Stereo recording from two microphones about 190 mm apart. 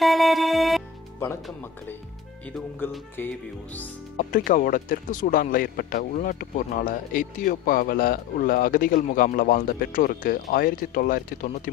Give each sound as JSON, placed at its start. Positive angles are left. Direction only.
{"t": 0.0, "sound": "music", "side_deg": 0}
{"t": 1.2, "sound": "speech", "side_deg": 10}
{"t": 4.3, "sound": "speech", "side_deg": 45}